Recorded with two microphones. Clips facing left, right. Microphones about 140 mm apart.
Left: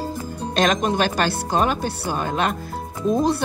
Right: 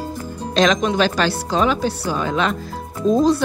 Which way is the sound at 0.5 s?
50° left (ahead or behind).